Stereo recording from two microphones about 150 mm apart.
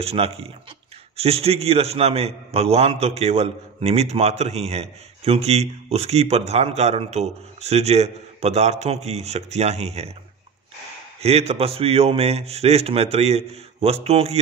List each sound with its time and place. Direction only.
0.0 s a man's voice: 40° right (ahead or behind)
11.1 s a man's voice: 45° right (ahead or behind)